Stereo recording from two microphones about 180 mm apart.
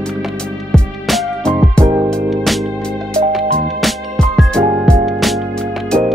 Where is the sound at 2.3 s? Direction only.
Centre (ahead or behind).